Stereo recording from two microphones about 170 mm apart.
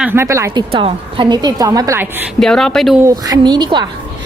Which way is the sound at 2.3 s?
Centre (ahead or behind).